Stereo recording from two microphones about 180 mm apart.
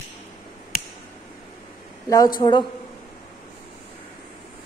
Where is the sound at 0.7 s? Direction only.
55° left (ahead or behind).